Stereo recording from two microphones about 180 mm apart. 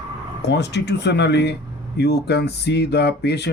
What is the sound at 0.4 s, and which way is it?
Speech, 70° left (ahead or behind).